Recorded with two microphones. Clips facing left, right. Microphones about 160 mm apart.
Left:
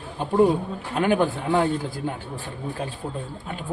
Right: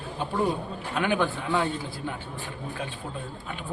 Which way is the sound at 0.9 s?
40° left (ahead or behind).